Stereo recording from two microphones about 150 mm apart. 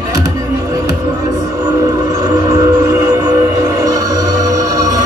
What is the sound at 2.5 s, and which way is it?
Train, 15° right (ahead or behind).